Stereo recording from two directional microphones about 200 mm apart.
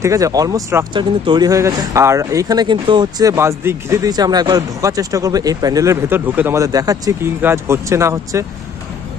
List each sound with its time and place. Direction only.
0.0 s speech: 15° right (ahead or behind)